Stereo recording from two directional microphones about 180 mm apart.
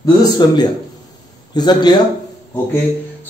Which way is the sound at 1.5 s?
25° left (ahead or behind).